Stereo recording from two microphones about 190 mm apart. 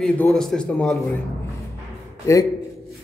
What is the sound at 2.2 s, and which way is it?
Speech, 15° left (ahead or behind).